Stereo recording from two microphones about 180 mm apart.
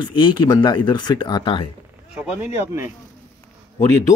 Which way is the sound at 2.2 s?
5° right (ahead or behind).